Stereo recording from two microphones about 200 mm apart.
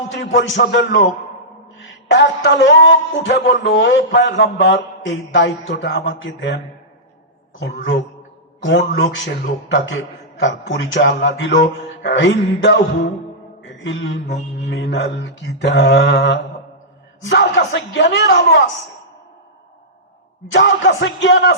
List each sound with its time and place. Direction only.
0.1 s a man's voice: 65° left (ahead or behind)
7.6 s a man's voice: 55° left (ahead or behind)
13.7 s mantra: 65° left (ahead or behind)
14.7 s a man's voice: 60° left (ahead or behind)
20.5 s a man's voice: 65° left (ahead or behind)